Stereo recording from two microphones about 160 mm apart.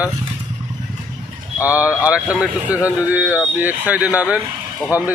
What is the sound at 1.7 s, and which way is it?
Speech, 10° right (ahead or behind).